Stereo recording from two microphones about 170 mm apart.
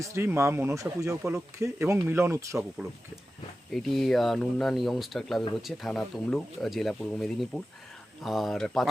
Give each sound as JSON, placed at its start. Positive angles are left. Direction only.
{"t": 0.0, "sound": "speech", "side_deg": -15}
{"t": 3.7, "sound": "speech", "side_deg": 0}